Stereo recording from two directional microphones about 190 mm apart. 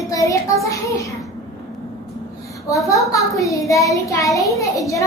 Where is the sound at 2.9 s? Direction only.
15° left (ahead or behind).